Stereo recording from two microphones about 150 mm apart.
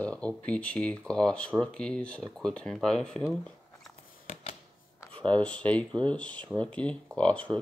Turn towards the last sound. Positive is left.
turn(degrees=10)  # may be behind; listen again after turning